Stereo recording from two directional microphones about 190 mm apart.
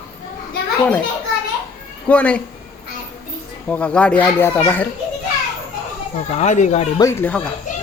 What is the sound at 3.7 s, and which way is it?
Speech, 5° left (ahead or behind).